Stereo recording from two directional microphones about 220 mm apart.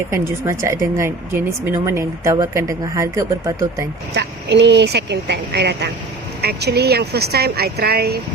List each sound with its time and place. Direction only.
0.1 s speech: 10° right (ahead or behind)
4.1 s speech: 50° right (ahead or behind)